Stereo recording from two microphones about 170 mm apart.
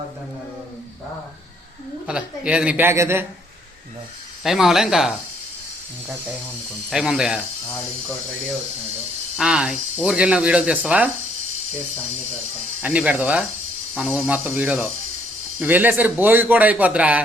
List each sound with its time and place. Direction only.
2.0 s speech: 5° right (ahead or behind)
4.4 s speech: centre (ahead or behind)
6.9 s speech: 5° right (ahead or behind)
9.4 s speech: 5° right (ahead or behind)
12.8 s speech: 10° right (ahead or behind)